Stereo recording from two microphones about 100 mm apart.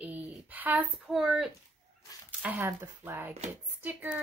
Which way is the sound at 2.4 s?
15° right (ahead or behind).